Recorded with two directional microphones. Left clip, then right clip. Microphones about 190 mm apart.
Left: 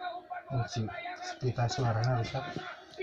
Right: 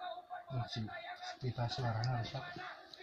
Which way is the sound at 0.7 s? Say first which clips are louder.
Left 7 dB; 10° left (ahead or behind).